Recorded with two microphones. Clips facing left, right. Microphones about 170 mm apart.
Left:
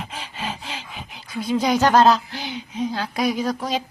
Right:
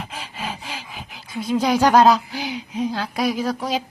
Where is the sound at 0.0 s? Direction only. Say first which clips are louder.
Even; 5° right (ahead or behind).